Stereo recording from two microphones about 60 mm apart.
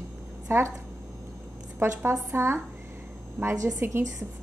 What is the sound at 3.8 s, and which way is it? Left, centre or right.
Speech, right.